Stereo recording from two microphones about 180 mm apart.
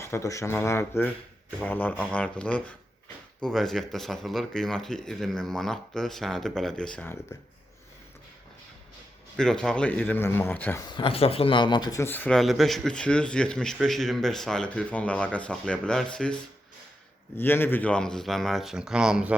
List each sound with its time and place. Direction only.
0.0 s speech: 15° left (ahead or behind)
9.3 s speech: 5° left (ahead or behind)
10.8 s speech: 30° left (ahead or behind); by 19.4 s 5° right (ahead or behind)